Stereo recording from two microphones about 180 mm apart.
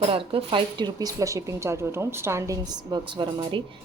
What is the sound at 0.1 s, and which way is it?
Speech, 30° right (ahead or behind).